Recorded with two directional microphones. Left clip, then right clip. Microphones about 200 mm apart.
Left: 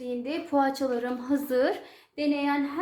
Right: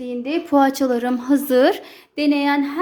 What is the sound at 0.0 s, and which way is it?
A woman's voice, 45° right (ahead or behind).